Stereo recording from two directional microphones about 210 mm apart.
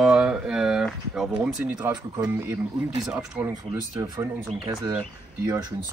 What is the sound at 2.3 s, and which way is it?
Speech, 15° right (ahead or behind).